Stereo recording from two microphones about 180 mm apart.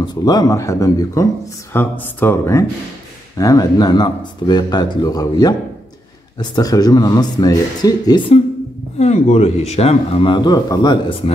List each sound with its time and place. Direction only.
0.0 s speech: 25° left (ahead or behind)
8.9 s a man's voice: 40° left (ahead or behind)